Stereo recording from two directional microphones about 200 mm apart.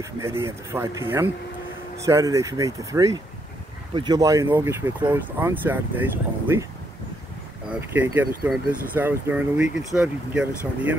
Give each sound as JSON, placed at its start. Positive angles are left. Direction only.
{"t": 0.0, "sound": "speech", "side_deg": -15}
{"t": 7.9, "sound": "speech", "side_deg": -10}